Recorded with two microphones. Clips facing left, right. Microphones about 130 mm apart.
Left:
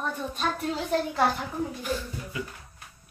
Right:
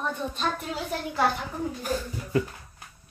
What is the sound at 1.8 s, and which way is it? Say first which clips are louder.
Speech: right 1 dB; 45° right (ahead or behind).